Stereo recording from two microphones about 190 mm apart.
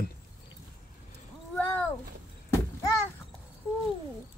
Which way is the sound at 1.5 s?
10° left (ahead or behind).